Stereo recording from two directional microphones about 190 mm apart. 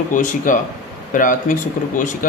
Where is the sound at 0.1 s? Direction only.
45° left (ahead or behind).